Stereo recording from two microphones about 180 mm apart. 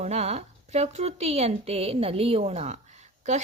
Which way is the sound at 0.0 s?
35° right (ahead or behind).